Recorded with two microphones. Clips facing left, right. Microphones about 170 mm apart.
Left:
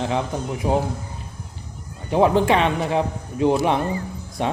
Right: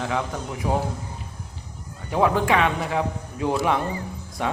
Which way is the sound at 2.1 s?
25° left (ahead or behind).